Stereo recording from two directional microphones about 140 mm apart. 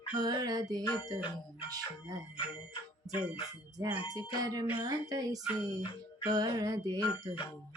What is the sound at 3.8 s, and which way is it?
Speech, 25° right (ahead or behind).